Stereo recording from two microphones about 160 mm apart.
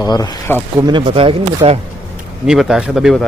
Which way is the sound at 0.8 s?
30° right (ahead or behind).